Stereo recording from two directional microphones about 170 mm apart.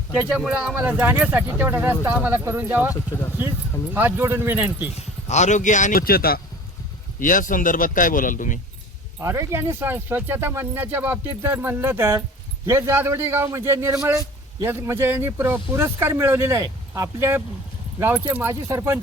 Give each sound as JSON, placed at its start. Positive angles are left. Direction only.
{"t": 0.1, "sound": "a man's voice", "side_deg": -10}
{"t": 3.9, "sound": "a man's voice", "side_deg": -10}
{"t": 4.9, "sound": "speech", "side_deg": 45}
{"t": 7.2, "sound": "speech", "side_deg": 50}
{"t": 9.2, "sound": "a man's voice", "side_deg": -15}